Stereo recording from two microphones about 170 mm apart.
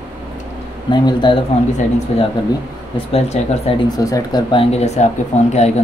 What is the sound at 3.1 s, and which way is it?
Speech, 40° left (ahead or behind).